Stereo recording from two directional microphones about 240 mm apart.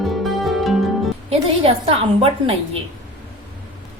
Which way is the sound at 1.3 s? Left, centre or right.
Right.